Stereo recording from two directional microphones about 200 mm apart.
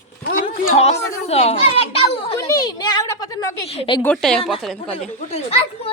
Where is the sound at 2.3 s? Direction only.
15° left (ahead or behind).